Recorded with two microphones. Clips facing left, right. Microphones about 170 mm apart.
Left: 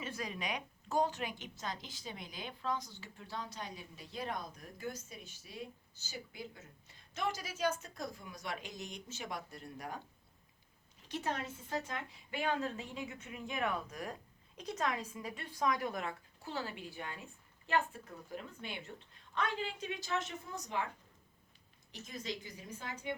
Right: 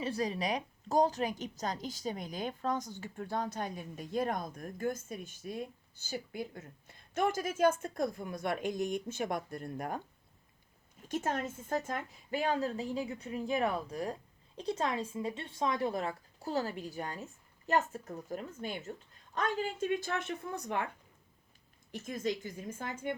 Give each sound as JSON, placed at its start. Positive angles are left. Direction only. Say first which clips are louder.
{"t": 0.0, "sound": "a woman's voice", "louder": "right 8 dB", "side_deg": -35}
{"t": 11.0, "sound": "a woman's voice", "louder": "right 5 dB", "side_deg": -45}
{"t": 21.9, "sound": "a woman's voice", "louder": "right 8 dB", "side_deg": -50}